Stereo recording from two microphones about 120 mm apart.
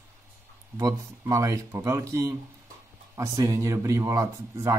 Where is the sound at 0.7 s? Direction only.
25° right (ahead or behind).